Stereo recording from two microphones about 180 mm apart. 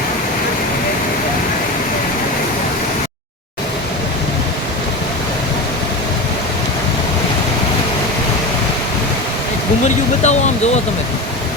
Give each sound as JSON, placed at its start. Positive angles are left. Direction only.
{"t": 10.2, "sound": "speech", "side_deg": 40}